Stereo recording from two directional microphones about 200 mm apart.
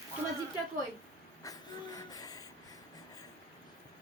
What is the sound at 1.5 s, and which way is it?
Gasp, 15° left (ahead or behind).